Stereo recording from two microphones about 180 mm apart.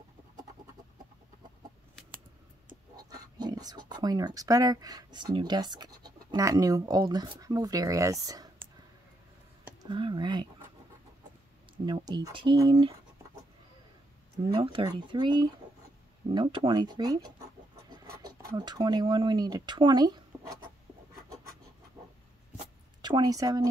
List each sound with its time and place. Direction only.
3.0 s speech: 20° right (ahead or behind)
9.8 s speech: 25° right (ahead or behind)
11.8 s speech: 20° right (ahead or behind)
14.5 s speech: 30° right (ahead or behind)
18.6 s speech: 25° right (ahead or behind)
23.0 s speech: 25° right (ahead or behind)